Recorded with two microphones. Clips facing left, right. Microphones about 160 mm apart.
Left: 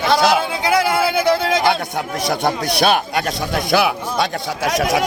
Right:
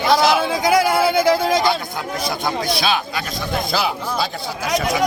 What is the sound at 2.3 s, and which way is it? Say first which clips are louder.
Speech: left 4 dB; 70° left (ahead or behind).